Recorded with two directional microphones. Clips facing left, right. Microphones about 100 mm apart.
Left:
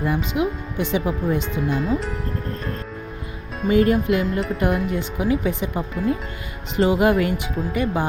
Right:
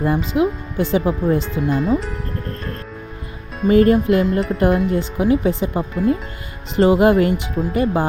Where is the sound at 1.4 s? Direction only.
Centre (ahead or behind).